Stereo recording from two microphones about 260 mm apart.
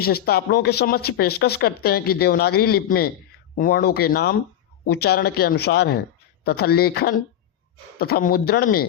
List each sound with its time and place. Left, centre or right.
0.0 s speech: left